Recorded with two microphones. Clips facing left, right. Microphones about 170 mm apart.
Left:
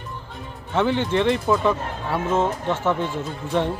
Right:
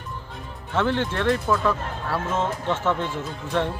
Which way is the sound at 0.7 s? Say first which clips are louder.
Left 3 dB; 15° left (ahead or behind).